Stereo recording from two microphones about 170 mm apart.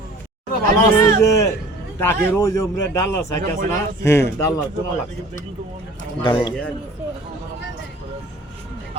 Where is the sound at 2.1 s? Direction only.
15° left (ahead or behind).